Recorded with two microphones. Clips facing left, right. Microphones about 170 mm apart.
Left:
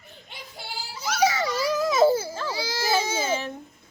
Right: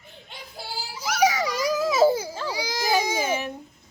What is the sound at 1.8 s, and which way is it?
Baby cry, 5° right (ahead or behind).